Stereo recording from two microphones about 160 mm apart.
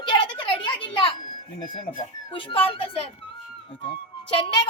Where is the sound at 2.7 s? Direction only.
35° left (ahead or behind).